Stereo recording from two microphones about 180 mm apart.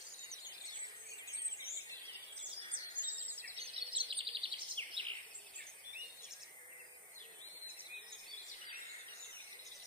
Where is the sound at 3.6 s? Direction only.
30° right (ahead or behind).